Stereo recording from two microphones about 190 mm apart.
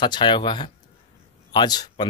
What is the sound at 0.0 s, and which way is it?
Speech, 25° left (ahead or behind).